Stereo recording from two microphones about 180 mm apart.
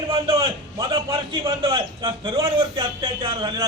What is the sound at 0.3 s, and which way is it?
A man's voice, 25° right (ahead or behind).